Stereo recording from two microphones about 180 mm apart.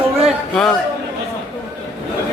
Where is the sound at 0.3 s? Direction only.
Centre (ahead or behind).